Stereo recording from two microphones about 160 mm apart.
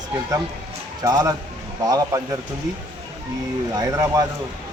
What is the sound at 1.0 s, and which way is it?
Speech, 25° right (ahead or behind).